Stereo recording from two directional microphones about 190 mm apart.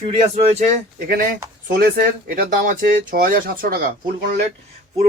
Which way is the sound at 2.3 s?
50° right (ahead or behind).